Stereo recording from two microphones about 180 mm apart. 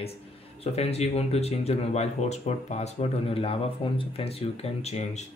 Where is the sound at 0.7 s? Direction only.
35° left (ahead or behind).